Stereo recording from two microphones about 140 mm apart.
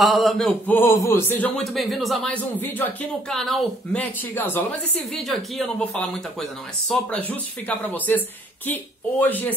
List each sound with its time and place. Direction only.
0.0 s speech: centre (ahead or behind)
0.7 s a man's voice: 15° left (ahead or behind)
1.6 s speech: centre (ahead or behind)
2.5 s speech: 10° left (ahead or behind)
9.2 s speech: 10° left (ahead or behind)